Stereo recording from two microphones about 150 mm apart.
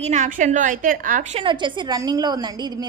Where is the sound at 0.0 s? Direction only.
55° right (ahead or behind).